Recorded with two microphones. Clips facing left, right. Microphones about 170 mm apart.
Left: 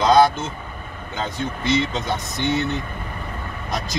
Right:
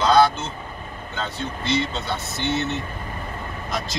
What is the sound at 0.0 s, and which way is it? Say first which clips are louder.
Vehicle: left 2 dB; 15° left (ahead or behind).